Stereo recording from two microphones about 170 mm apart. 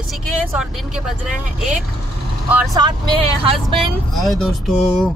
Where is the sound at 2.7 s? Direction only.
25° right (ahead or behind).